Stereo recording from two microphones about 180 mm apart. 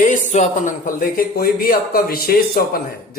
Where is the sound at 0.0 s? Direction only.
45° left (ahead or behind).